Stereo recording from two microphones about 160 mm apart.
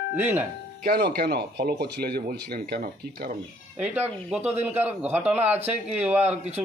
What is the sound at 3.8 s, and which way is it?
A man's voice, 10° right (ahead or behind).